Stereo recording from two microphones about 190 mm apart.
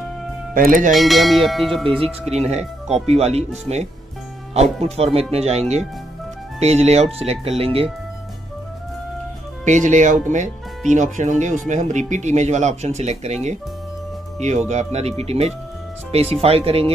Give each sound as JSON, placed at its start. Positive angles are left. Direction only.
{"t": 0.6, "sound": "speech", "side_deg": -50}
{"t": 0.9, "sound": "church bell", "side_deg": 0}
{"t": 1.9, "sound": "speech", "side_deg": -30}
{"t": 9.7, "sound": "speech", "side_deg": -40}
{"t": 14.7, "sound": "speech", "side_deg": -35}